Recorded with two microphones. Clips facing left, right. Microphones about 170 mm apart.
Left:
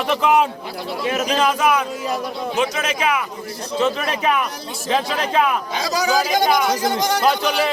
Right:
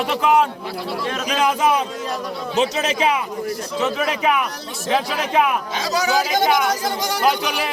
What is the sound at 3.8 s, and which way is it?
A man's voice, 5° right (ahead or behind).